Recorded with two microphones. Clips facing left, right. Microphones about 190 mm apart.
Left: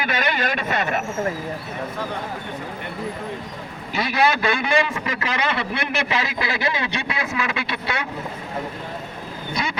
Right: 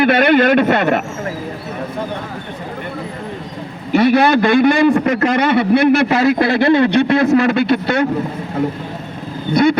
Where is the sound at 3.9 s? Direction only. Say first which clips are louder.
Right 10 dB; 55° right (ahead or behind).